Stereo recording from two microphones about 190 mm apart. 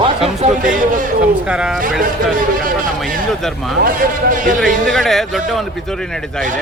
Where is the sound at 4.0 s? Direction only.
45° right (ahead or behind).